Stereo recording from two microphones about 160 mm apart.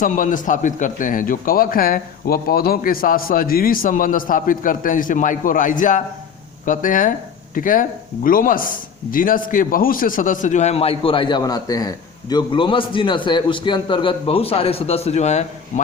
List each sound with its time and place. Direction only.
0.0 s a man's voice: 55° left (ahead or behind)